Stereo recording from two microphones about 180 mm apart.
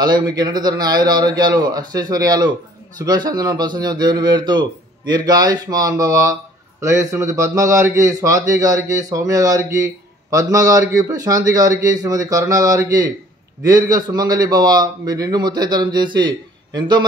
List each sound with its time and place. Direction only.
0.0 s a man's voice: 25° right (ahead or behind)